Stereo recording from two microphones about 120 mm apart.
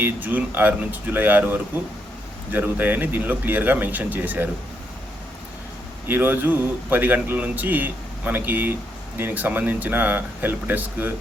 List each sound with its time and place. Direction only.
0.0 s speech: 15° right (ahead or behind)
6.1 s speech: 15° right (ahead or behind)